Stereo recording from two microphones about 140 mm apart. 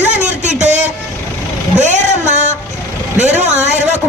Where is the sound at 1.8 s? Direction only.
55° right (ahead or behind).